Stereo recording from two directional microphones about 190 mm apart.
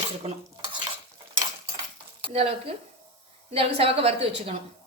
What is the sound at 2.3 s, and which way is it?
A woman's voice, 30° right (ahead or behind).